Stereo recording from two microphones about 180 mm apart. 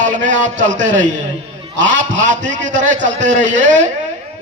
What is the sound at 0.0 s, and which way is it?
A man's voice, 45° right (ahead or behind).